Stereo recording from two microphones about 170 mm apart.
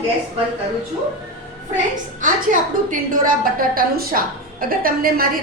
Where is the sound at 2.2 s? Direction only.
50° right (ahead or behind).